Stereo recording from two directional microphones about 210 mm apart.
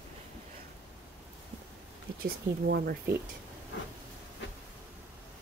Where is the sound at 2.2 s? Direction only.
45° right (ahead or behind).